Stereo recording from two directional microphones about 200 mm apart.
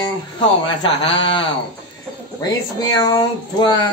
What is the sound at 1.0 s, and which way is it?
Speech, 25° left (ahead or behind).